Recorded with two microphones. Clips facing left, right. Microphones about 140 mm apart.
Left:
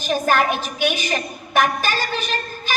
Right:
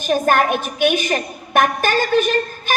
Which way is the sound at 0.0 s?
55° right (ahead or behind).